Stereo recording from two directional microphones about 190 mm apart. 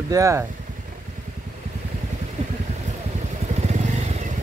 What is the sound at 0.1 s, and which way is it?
Speech, 15° right (ahead or behind).